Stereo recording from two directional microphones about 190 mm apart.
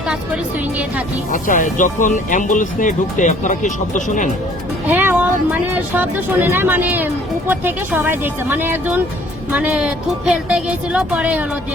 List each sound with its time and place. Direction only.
1.3 s speech: 45° left (ahead or behind)
4.9 s speech: 10° right (ahead or behind)